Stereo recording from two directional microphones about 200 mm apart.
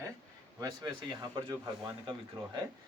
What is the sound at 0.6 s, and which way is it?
Speech, 20° right (ahead or behind).